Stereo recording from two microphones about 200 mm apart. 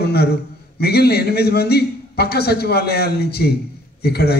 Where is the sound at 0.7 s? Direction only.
50° left (ahead or behind).